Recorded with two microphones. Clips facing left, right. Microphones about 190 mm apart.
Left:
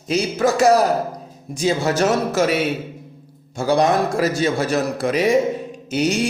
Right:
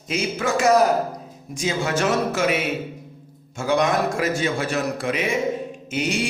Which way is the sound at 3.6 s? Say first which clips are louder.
Left 3 dB; 35° left (ahead or behind).